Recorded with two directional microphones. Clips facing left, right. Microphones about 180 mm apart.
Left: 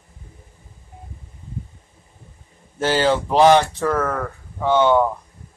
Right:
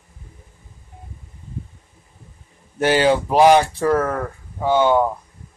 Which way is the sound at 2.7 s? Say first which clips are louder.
Right 2 dB; 15° right (ahead or behind).